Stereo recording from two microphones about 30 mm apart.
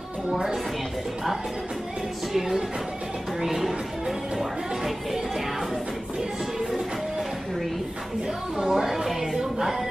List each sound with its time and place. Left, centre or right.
2.3 s speech: centre
8.5 s speech: right
8.8 s speech: centre